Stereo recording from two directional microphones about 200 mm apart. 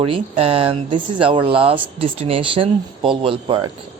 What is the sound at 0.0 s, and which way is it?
Speech, 30° right (ahead or behind).